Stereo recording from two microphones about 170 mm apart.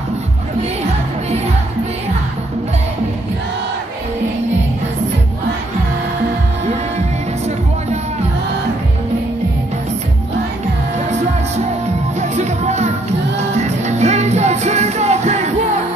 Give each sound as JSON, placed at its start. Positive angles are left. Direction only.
{"t": 11.1, "sound": "music", "side_deg": -40}